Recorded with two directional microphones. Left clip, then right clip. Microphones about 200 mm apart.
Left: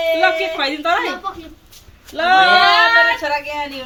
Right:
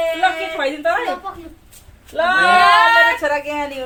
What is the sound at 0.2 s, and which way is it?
Speech, 15° right (ahead or behind).